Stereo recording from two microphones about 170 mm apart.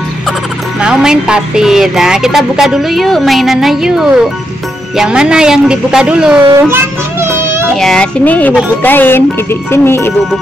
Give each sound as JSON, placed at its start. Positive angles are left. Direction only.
{"t": 0.7, "sound": "speech", "side_deg": -5}
{"t": 6.7, "sound": "child singing", "side_deg": -15}
{"t": 7.7, "sound": "speech", "side_deg": 5}